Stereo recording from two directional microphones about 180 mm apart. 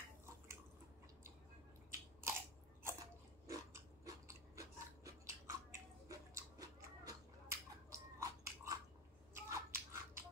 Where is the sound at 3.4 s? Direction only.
15° right (ahead or behind).